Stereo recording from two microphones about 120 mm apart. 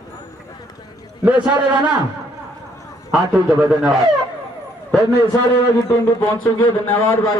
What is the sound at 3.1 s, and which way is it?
Speech, 5° right (ahead or behind).